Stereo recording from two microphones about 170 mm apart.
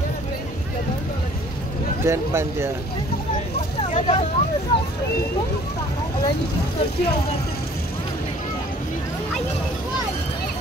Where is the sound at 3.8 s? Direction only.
35° left (ahead or behind).